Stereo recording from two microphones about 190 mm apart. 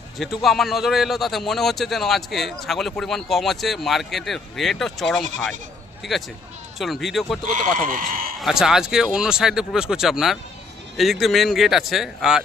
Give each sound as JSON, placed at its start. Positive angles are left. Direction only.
{"t": 0.2, "sound": "speech", "side_deg": 0}
{"t": 7.8, "sound": "speech", "side_deg": -45}
{"t": 8.4, "sound": "speech", "side_deg": 0}